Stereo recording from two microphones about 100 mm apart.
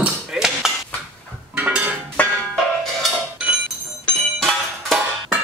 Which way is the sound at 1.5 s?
15° right (ahead or behind).